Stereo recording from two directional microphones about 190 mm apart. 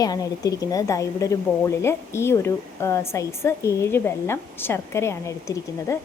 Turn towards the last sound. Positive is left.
turn(degrees=15)  # may be behind; listen again after turning